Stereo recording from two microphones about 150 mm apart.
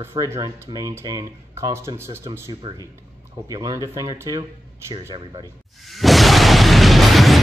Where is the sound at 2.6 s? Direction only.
30° right (ahead or behind).